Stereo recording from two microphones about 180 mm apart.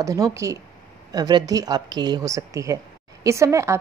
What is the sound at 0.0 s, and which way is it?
A woman's voice, 20° right (ahead or behind).